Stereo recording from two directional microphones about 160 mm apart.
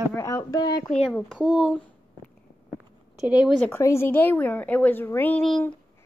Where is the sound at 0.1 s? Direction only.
15° left (ahead or behind).